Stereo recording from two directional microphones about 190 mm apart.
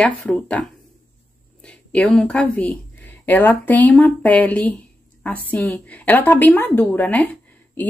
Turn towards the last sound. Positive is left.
turn(degrees=5)  # may be behind; listen again after turning